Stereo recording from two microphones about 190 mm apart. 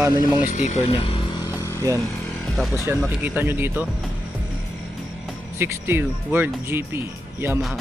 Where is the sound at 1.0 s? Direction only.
30° left (ahead or behind).